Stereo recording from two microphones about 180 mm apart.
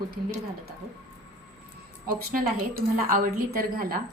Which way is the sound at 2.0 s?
50° right (ahead or behind).